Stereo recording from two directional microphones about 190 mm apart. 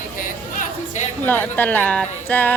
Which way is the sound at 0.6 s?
40° left (ahead or behind).